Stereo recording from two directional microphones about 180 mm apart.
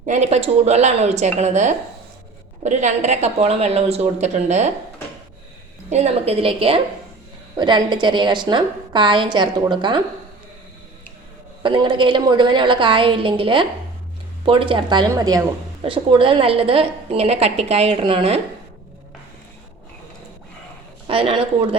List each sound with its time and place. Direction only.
0.0 s a woman's voice: 40° right (ahead or behind)
5.9 s a woman's voice: 35° right (ahead or behind)
11.6 s a woman's voice: 25° right (ahead or behind)
15.8 s a woman's voice: 30° right (ahead or behind)
21.1 s a woman's voice: 30° right (ahead or behind)